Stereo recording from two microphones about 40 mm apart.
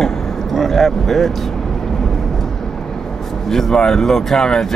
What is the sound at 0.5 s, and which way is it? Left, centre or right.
Speech, centre.